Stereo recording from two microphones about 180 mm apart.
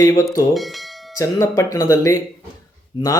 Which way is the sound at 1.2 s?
15° left (ahead or behind).